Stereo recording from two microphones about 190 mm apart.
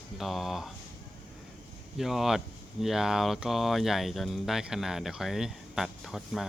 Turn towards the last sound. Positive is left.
turn(degrees=0)  # may be behind; listen again after turning